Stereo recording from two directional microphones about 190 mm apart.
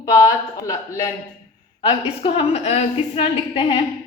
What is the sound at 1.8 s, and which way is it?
A woman's voice, 30° left (ahead or behind).